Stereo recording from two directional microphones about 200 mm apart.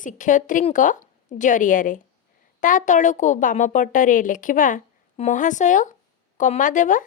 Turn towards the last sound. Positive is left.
turn(degrees=40)  # may be behind; listen again after turning